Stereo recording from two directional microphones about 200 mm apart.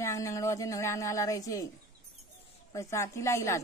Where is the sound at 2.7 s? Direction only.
15° left (ahead or behind).